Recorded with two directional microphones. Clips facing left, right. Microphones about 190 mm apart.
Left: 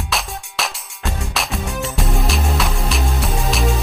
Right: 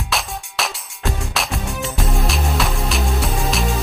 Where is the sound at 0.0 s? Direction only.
Centre (ahead or behind).